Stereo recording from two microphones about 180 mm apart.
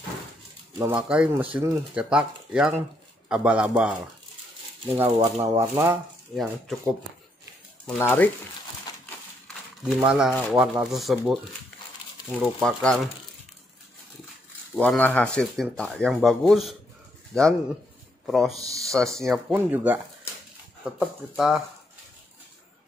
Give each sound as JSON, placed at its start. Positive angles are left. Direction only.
{"t": 0.7, "sound": "speech", "side_deg": -10}
{"t": 7.8, "sound": "speech", "side_deg": 10}
{"t": 8.9, "sound": "crushing", "side_deg": 20}
{"t": 9.8, "sound": "speech", "side_deg": -5}
{"t": 14.8, "sound": "speech", "side_deg": 10}
{"t": 18.6, "sound": "speech", "side_deg": -20}
{"t": 18.9, "sound": "speech", "side_deg": 0}
{"t": 19.5, "sound": "speech", "side_deg": -10}